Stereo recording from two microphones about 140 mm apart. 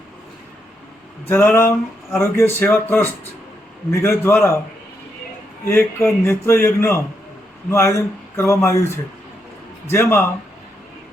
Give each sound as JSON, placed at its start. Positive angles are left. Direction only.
{"t": 1.3, "sound": "a man's voice", "side_deg": 15}
{"t": 5.6, "sound": "a man's voice", "side_deg": 15}
{"t": 9.9, "sound": "a man's voice", "side_deg": 15}